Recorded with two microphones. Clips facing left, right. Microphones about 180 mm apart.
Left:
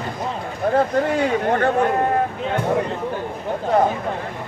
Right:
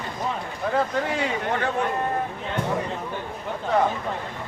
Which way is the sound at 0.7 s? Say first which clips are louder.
Left 6 dB; 45° left (ahead or behind).